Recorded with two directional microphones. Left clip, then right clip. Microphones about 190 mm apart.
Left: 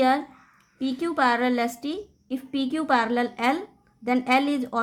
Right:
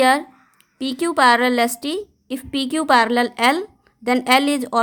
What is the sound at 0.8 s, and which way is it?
A woman's voice, 40° right (ahead or behind).